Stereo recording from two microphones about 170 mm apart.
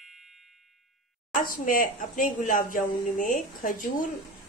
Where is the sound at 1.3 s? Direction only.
55° left (ahead or behind).